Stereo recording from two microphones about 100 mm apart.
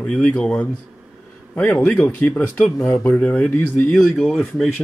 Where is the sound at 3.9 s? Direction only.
5° left (ahead or behind).